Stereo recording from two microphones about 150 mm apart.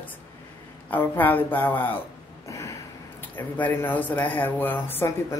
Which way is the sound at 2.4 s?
20° left (ahead or behind).